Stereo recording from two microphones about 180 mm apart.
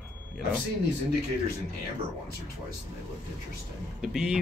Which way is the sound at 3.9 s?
5° right (ahead or behind).